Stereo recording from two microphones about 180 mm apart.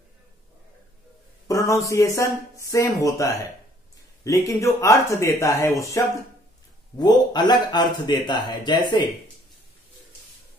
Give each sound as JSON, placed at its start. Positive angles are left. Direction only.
{"t": 1.5, "sound": "speech", "side_deg": 15}